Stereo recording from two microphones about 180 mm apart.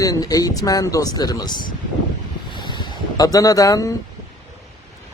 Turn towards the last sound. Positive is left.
turn(degrees=20)  # may be behind; listen again after turning